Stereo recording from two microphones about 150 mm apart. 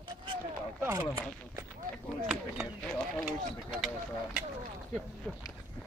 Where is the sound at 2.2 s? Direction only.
5° right (ahead or behind).